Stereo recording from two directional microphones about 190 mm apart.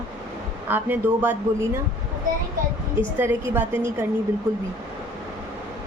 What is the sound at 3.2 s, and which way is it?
Speech, 10° right (ahead or behind).